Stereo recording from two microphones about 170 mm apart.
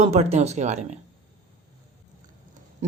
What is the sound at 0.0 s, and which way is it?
Speech, 40° right (ahead or behind).